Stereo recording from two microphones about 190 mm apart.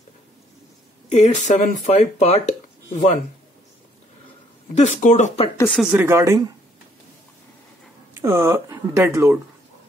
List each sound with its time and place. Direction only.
1.0 s speech: 40° left (ahead or behind)
4.7 s speech: 40° left (ahead or behind)
5.7 s speech: 5° right (ahead or behind)
8.1 s speech: 15° right (ahead or behind)